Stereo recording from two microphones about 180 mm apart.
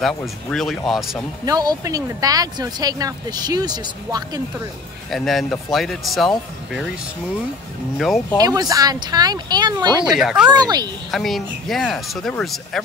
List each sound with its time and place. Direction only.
0.5 s speech: centre (ahead or behind)
1.4 s speech: 20° right (ahead or behind)
5.1 s speech: centre (ahead or behind)
8.0 s speech: centre (ahead or behind)
8.4 s speech: 20° right (ahead or behind)
10.1 s speech: 5° right (ahead or behind)
10.5 s speech: 20° right (ahead or behind)
11.1 s speech: centre (ahead or behind)